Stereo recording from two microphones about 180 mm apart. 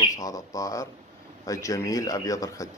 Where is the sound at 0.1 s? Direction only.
20° left (ahead or behind).